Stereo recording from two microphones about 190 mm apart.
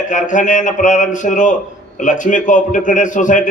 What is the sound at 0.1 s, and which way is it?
A man's voice, 40° left (ahead or behind).